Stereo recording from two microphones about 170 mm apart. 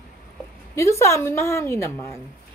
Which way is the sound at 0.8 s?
15° left (ahead or behind).